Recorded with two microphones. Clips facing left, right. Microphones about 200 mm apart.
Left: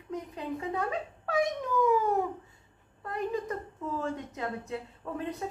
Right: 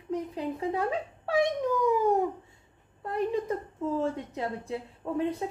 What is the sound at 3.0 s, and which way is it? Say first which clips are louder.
A woman's voice: right 4 dB; 30° right (ahead or behind).